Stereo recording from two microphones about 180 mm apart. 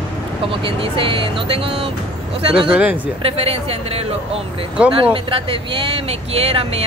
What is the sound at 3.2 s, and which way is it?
Speech, 35° right (ahead or behind).